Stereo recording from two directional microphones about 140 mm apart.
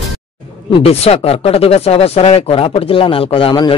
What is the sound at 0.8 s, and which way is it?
Speech, 45° left (ahead or behind).